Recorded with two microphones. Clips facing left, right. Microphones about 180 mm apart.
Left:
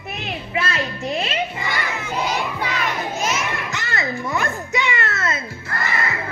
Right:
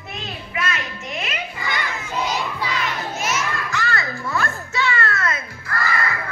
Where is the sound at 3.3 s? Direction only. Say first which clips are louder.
Even; 20° left (ahead or behind).